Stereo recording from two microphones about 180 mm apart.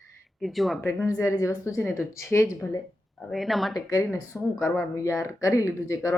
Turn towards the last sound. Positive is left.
turn(degrees=15)  # may be behind; listen again after turning